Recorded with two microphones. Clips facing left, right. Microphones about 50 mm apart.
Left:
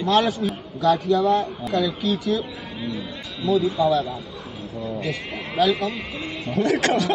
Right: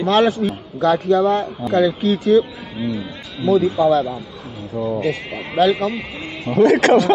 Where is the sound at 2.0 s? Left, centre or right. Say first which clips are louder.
Right 8 dB; centre.